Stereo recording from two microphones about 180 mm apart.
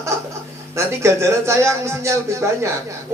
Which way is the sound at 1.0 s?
15° right (ahead or behind).